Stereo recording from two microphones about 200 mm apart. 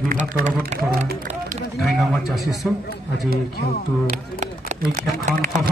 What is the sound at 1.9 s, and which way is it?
Speech, centre (ahead or behind).